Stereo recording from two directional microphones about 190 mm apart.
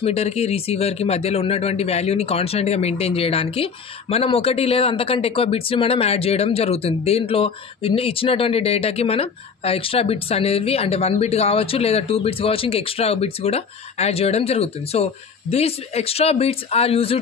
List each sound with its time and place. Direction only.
0.0 s speech: 35° left (ahead or behind)